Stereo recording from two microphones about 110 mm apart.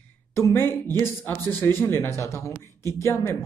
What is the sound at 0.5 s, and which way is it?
Speech, 20° left (ahead or behind).